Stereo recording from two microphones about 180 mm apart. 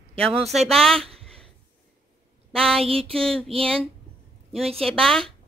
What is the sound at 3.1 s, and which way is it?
Speech, 5° left (ahead or behind).